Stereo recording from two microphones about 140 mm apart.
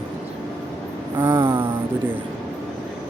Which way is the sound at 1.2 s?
15° right (ahead or behind).